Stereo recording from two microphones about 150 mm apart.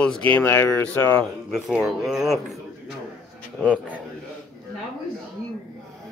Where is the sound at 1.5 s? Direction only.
Centre (ahead or behind).